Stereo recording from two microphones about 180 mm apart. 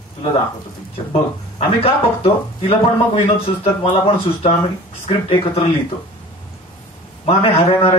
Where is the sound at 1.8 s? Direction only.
30° left (ahead or behind).